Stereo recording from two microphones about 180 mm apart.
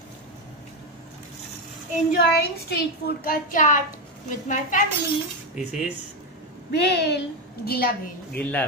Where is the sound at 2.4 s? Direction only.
60° left (ahead or behind); by 4.8 s 45° left (ahead or behind).